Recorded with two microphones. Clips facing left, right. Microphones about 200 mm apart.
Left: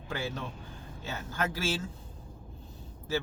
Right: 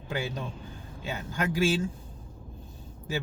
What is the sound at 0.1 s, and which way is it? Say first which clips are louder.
Speech: right 3 dB; 15° right (ahead or behind).